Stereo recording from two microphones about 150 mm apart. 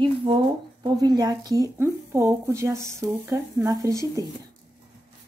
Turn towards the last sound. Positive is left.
turn(degrees=-20)  # may be behind; listen again after turning